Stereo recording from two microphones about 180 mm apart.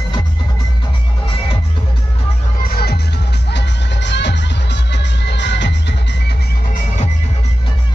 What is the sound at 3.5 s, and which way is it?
Music, 75° left (ahead or behind).